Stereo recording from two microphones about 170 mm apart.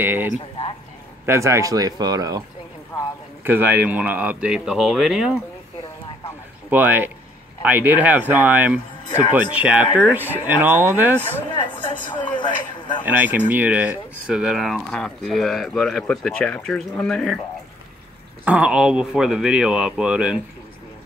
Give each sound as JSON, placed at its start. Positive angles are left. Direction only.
{"t": 0.0, "sound": "speech", "side_deg": -10}
{"t": 3.4, "sound": "speech", "side_deg": -10}
{"t": 6.7, "sound": "speech", "side_deg": -10}
{"t": 12.1, "sound": "a man's voice", "side_deg": 25}
{"t": 13.0, "sound": "speech", "side_deg": -10}
{"t": 18.4, "sound": "speech", "side_deg": -10}